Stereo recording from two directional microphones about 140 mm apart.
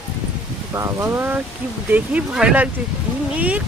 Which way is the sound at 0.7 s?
20° right (ahead or behind).